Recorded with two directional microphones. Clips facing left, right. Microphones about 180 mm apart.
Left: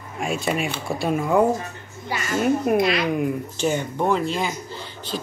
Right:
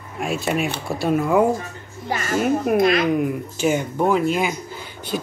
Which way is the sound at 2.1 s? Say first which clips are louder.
Right 3 dB; 45° right (ahead or behind).